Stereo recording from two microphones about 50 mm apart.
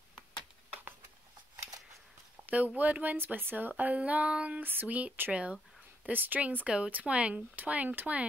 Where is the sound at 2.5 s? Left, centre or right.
Right.